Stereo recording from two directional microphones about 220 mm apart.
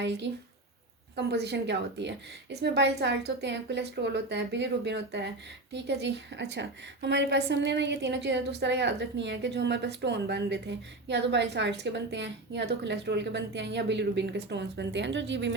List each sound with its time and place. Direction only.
0.0 s a woman's voice: 50° right (ahead or behind)